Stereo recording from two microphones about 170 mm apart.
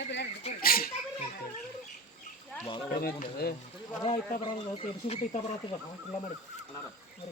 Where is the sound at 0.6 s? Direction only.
60° left (ahead or behind).